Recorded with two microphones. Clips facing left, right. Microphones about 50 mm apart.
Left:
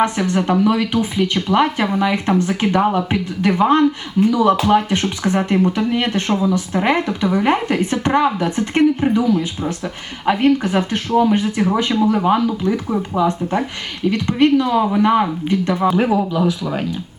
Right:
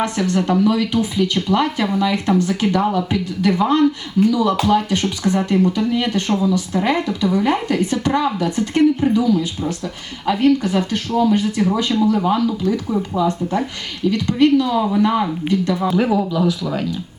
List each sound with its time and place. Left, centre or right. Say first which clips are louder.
0.0 s speech: left 2 dB; centre
16.0 s speech: left 1 dB; centre